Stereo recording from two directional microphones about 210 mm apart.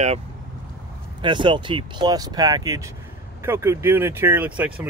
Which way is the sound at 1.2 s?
25° right (ahead or behind).